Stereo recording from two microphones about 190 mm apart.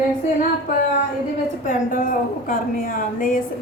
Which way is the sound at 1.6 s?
40° left (ahead or behind).